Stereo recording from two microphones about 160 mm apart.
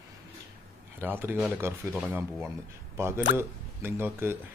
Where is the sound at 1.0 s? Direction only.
15° right (ahead or behind).